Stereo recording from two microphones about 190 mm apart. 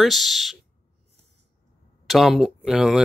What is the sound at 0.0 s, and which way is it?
Speech, centre (ahead or behind).